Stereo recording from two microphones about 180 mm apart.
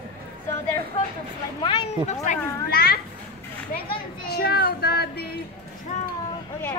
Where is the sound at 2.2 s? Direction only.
50° left (ahead or behind).